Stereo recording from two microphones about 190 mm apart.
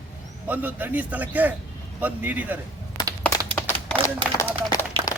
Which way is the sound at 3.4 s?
30° right (ahead or behind).